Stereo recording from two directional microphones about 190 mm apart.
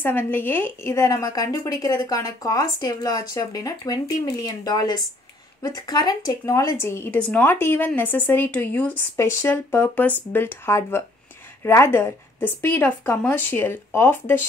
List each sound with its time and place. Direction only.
0.0 s speech: 10° left (ahead or behind)